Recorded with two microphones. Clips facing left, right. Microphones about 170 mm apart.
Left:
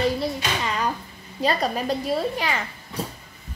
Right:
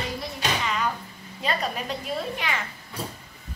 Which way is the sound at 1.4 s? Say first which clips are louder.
Left 5 dB; 35° left (ahead or behind).